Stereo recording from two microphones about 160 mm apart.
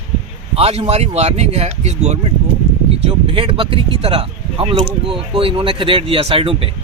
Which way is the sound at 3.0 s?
35° right (ahead or behind).